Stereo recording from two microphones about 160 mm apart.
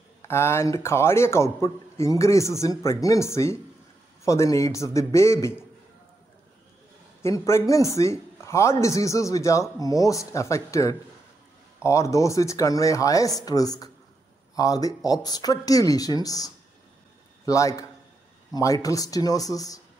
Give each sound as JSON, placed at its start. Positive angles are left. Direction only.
{"t": 0.2, "sound": "a man's voice", "side_deg": 15}
{"t": 7.2, "sound": "speech", "side_deg": 15}